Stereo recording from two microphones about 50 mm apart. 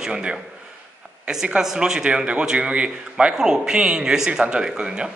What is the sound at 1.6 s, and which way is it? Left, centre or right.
A man's voice, centre.